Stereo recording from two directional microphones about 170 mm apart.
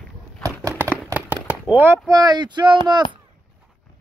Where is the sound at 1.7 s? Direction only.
10° right (ahead or behind).